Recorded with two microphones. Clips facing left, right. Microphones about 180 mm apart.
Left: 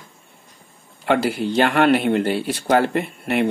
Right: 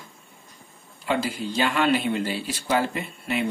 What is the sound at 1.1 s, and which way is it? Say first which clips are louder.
Speech: left 7 dB; 70° left (ahead or behind).